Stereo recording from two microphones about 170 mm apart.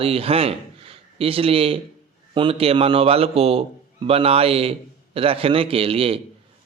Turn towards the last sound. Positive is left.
turn(degrees=-35)  # may be behind; listen again after turning